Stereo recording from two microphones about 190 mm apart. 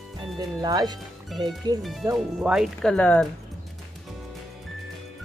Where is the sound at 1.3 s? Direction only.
Centre (ahead or behind).